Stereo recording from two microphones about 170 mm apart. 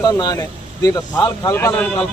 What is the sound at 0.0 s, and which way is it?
A man's voice, 25° left (ahead or behind).